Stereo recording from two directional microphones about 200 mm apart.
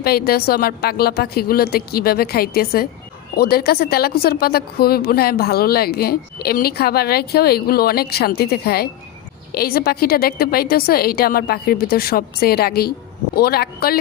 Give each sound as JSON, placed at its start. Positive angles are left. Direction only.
{"t": 0.0, "sound": "speech", "side_deg": 50}